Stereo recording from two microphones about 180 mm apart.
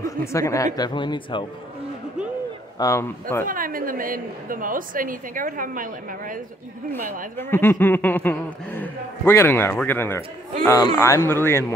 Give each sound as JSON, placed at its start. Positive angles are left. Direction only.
{"t": 0.0, "sound": "speech", "side_deg": 15}
{"t": 2.8, "sound": "speech", "side_deg": 15}
{"t": 3.4, "sound": "a woman's voice", "side_deg": -50}
{"t": 7.5, "sound": "speech", "side_deg": 10}